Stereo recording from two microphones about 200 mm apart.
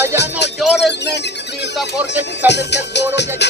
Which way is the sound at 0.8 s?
60° left (ahead or behind).